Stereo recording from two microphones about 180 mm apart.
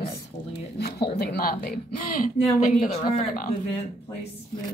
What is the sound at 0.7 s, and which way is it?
A woman's voice, 65° left (ahead or behind).